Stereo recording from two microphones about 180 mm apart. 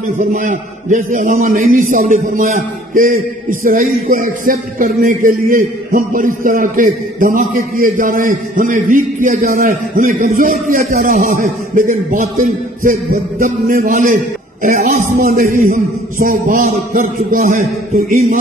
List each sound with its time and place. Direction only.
0.3 s a man's voice: 40° right (ahead or behind)